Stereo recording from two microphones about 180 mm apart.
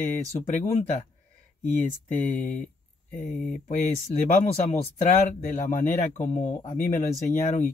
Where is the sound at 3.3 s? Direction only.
Centre (ahead or behind).